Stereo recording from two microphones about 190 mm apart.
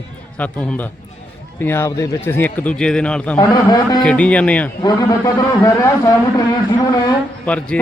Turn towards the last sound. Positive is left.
turn(degrees=5)  # may be behind; listen again after turning